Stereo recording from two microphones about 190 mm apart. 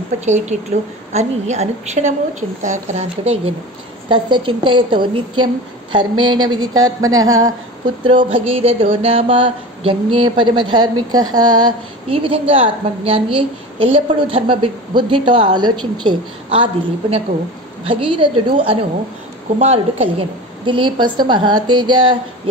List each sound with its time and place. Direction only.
0.2 s a woman's voice: 35° right (ahead or behind)